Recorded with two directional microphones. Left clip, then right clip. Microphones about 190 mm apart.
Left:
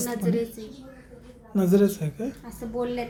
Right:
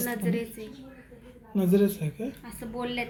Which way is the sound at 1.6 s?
5° left (ahead or behind).